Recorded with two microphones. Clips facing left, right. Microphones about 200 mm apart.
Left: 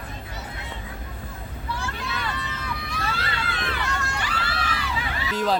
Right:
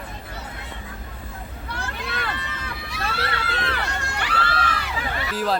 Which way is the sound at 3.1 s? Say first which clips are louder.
Right 4 dB; 65° right (ahead or behind).